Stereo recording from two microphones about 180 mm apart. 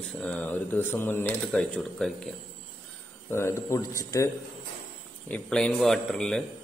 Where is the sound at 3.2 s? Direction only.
15° left (ahead or behind).